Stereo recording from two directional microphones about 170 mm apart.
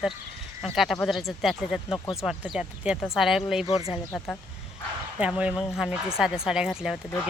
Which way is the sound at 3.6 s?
35° left (ahead or behind).